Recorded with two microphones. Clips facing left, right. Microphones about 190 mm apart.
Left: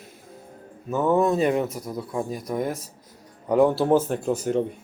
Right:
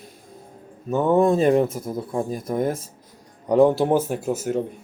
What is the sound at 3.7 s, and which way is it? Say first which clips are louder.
Speech: even; 15° right (ahead or behind).